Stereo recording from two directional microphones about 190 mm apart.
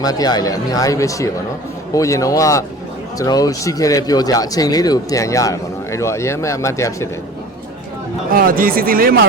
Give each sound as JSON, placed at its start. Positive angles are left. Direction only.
{"t": 0.0, "sound": "speech", "side_deg": 20}
{"t": 8.3, "sound": "speech", "side_deg": -50}